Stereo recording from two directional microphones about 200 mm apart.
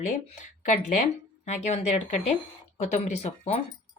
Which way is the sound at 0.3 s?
35° left (ahead or behind).